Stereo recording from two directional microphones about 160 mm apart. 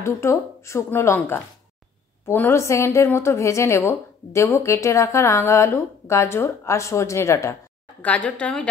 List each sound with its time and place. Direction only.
0.0 s a woman's voice: 15° left (ahead or behind)